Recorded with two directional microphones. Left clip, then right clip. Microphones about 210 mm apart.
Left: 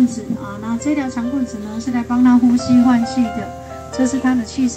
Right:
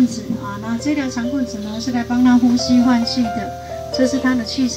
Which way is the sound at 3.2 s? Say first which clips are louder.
Even; 10° right (ahead or behind).